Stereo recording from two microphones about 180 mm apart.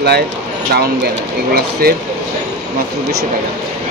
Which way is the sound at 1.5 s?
55° right (ahead or behind).